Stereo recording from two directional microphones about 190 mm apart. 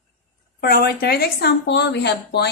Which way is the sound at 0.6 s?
55° left (ahead or behind).